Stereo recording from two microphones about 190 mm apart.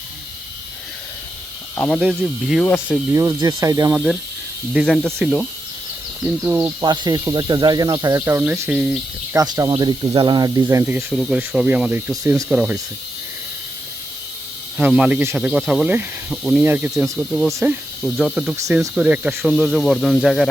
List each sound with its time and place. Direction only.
1.7 s speech: 10° left (ahead or behind)
2.0 s speech: 5° right (ahead or behind)
3.1 s speech: 15° right (ahead or behind)
3.9 s speech: 10° right (ahead or behind)
9.3 s speech: 20° right (ahead or behind)
14.8 s speech: 5° right (ahead or behind)